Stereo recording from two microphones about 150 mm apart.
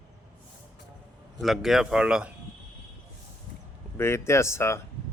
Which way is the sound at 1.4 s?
Centre (ahead or behind).